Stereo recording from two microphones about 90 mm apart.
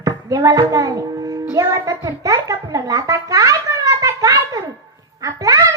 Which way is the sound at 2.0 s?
45° right (ahead or behind).